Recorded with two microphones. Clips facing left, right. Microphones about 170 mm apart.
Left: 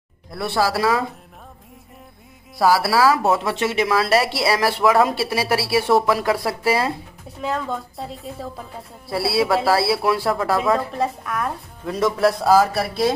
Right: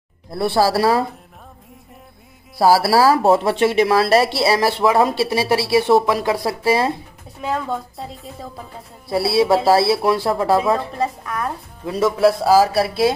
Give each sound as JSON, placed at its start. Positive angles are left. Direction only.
{"t": 0.3, "sound": "speech", "side_deg": -30}
{"t": 2.6, "sound": "speech", "side_deg": -35}
{"t": 7.4, "sound": "a woman's voice", "side_deg": 0}
{"t": 9.1, "sound": "speech", "side_deg": -25}
{"t": 11.0, "sound": "a woman's voice", "side_deg": 0}